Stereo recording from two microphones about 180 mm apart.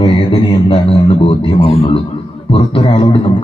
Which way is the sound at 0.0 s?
30° left (ahead or behind).